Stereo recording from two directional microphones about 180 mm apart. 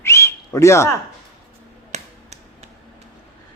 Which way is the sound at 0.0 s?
15° left (ahead or behind).